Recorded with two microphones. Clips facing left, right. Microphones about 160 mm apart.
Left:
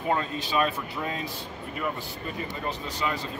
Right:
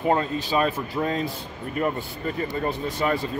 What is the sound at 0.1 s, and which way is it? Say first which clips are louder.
Speech: right 3 dB; 35° right (ahead or behind).